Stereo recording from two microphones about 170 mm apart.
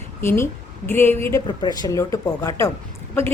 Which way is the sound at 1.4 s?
25° left (ahead or behind).